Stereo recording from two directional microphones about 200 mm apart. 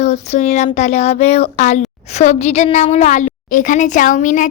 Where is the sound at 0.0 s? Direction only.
35° left (ahead or behind).